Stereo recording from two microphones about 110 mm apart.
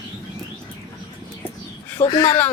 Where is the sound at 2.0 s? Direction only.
15° left (ahead or behind).